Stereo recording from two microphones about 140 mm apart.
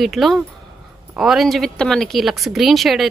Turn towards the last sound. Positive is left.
turn(degrees=0)  # may be behind; listen again after turning